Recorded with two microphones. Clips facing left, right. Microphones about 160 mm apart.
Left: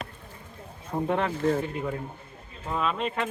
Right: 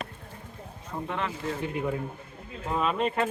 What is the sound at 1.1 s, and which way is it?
Speech, 45° left (ahead or behind).